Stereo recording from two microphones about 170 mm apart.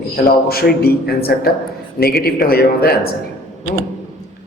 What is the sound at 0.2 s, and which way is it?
A man's voice, 65° left (ahead or behind).